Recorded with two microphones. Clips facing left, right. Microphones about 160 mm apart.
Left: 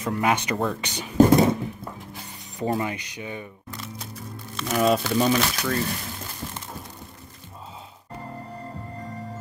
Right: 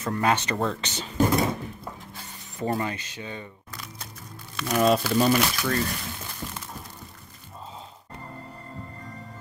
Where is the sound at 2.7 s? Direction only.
15° left (ahead or behind).